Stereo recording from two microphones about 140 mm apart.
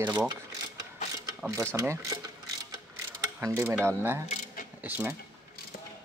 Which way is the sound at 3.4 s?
20° right (ahead or behind).